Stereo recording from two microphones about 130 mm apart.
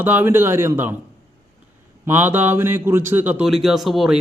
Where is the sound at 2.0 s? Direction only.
15° right (ahead or behind).